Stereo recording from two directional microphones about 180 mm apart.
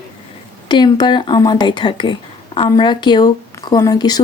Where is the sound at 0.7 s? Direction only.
25° left (ahead or behind).